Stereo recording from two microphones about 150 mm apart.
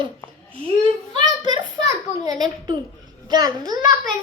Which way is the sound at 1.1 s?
30° right (ahead or behind).